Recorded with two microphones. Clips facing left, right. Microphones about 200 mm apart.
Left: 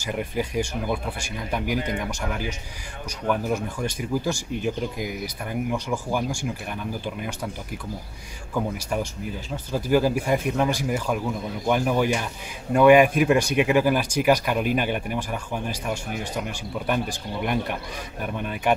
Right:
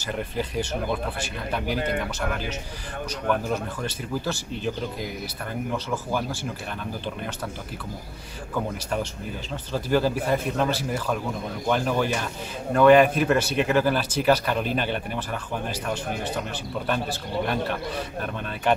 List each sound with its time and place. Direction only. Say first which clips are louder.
0.0 s speech: left 2 dB; 10° left (ahead or behind)
9.5 s speech: left 2 dB; 10° left (ahead or behind)
16.8 s speech: left 2 dB; 15° left (ahead or behind)